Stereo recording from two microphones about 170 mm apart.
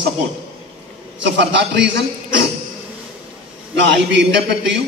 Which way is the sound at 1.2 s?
90° right.